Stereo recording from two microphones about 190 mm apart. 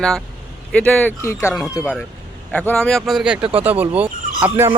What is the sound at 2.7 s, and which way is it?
Speech, 5° left (ahead or behind).